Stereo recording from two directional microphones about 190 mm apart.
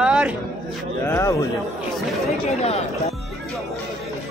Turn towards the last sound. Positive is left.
turn(degrees=35)  # may be behind; listen again after turning